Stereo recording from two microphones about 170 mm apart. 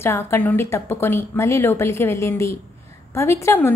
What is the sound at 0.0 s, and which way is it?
A woman's voice, 15° left (ahead or behind).